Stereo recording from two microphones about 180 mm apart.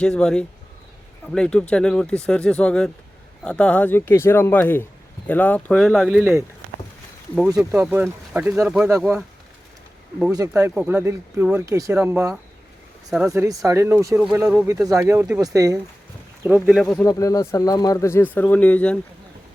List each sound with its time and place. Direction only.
0.0 s speech: 5° left (ahead or behind)
7.8 s speech: 10° right (ahead or behind)
10.3 s speech: 15° right (ahead or behind)
13.1 s speech: 5° right (ahead or behind)
13.3 s speech: 15° right (ahead or behind)
16.8 s speech: 5° left (ahead or behind)
17.1 s speech: 20° left (ahead or behind)